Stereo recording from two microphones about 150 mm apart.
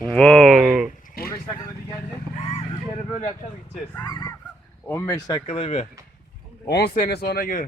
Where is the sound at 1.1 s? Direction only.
80° left.